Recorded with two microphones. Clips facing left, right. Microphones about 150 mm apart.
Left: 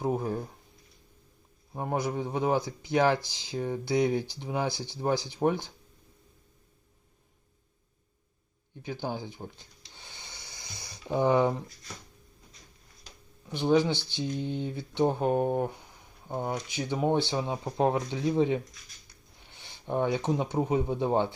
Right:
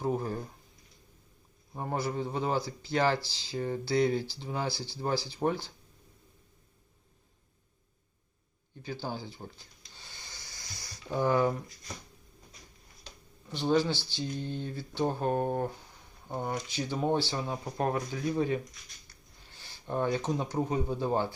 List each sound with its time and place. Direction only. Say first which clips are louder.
0.0 s speech: left 2 dB; 15° left (ahead or behind)
1.7 s speech: left 2 dB; 10° left (ahead or behind)
8.8 s a sound: left 3 dB; 20° left (ahead or behind)
13.5 s speech: left 3 dB; 15° left (ahead or behind)